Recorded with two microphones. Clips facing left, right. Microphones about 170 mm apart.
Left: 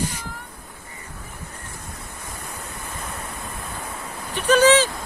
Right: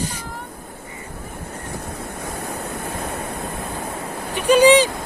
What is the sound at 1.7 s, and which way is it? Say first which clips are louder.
Waves: right 8 dB; 60° right (ahead or behind).